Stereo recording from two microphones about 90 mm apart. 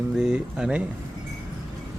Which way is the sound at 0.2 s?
10° right (ahead or behind).